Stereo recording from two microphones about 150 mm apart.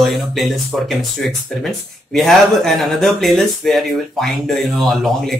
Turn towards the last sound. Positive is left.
turn(degrees=0)  # may be behind; listen again after turning